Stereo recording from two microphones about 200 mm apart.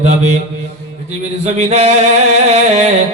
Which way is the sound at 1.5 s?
35° right (ahead or behind).